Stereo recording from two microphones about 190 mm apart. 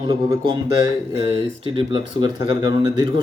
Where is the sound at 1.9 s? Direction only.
20° right (ahead or behind).